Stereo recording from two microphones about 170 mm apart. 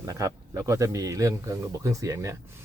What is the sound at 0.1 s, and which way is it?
Speech, 20° right (ahead or behind).